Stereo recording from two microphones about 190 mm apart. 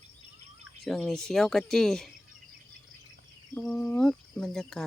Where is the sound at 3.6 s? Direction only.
10° left (ahead or behind).